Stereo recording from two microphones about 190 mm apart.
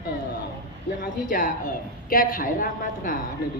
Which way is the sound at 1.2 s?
45° left (ahead or behind).